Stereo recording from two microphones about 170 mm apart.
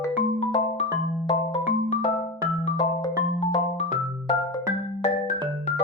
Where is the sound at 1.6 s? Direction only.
45° left (ahead or behind).